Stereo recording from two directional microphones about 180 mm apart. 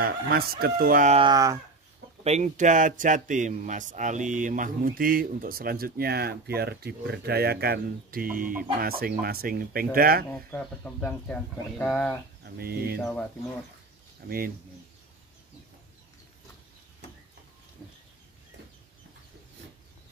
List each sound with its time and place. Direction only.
0.0 s speech: 55° right (ahead or behind)
1.1 s speech: 25° right (ahead or behind)
2.2 s speech: 40° right (ahead or behind)
10.3 s speech: 10° left (ahead or behind)
12.5 s speech: 55° right (ahead or behind)
14.2 s speech: 60° right (ahead or behind)